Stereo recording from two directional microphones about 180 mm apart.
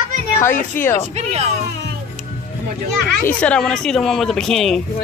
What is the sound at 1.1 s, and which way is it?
Speech, 35° right (ahead or behind).